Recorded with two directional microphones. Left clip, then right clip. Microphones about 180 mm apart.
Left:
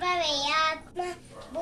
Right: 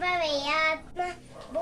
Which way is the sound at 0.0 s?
15° right (ahead or behind).